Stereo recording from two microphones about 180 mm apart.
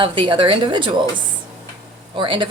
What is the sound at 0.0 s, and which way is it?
Speech, 25° right (ahead or behind).